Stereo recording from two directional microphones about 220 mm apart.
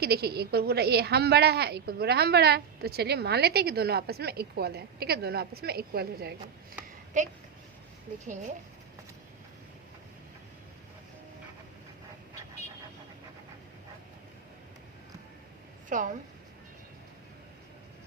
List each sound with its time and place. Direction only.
0.0 s a woman's voice: 45° right (ahead or behind)
8.2 s speech: 35° right (ahead or behind)
15.9 s speech: 35° right (ahead or behind)